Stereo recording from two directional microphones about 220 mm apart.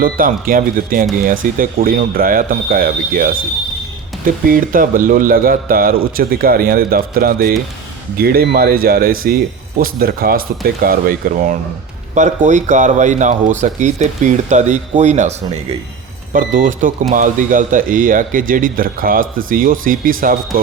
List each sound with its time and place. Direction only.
0.0 s speech: 40° right (ahead or behind)
4.3 s speech: 40° right (ahead or behind)
16.3 s speech: 40° right (ahead or behind)